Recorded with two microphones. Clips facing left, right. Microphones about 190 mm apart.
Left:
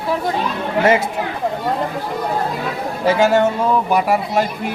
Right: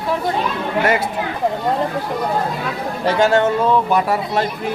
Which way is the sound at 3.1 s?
5° left (ahead or behind).